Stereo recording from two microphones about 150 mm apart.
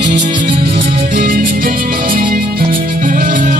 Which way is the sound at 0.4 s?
80° right.